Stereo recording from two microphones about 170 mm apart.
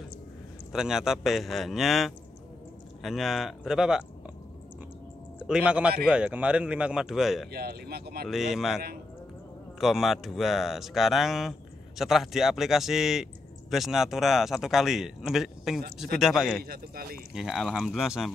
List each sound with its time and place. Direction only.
0.7 s speech: 5° right (ahead or behind)
5.5 s a man's voice: 5° right (ahead or behind)
7.5 s speech: 65° right (ahead or behind)
8.3 s speech: centre (ahead or behind)
16.6 s speech: 60° right (ahead or behind)
17.3 s speech: 5° right (ahead or behind)